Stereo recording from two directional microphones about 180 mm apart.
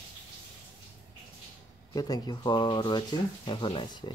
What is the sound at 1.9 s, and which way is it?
Speech, 20° left (ahead or behind).